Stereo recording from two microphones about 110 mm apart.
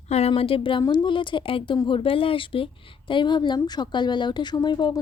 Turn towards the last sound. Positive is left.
turn(degrees=40)  # may be behind; listen again after turning